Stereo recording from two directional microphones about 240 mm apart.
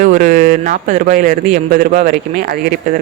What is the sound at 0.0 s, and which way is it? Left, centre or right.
Speech, right.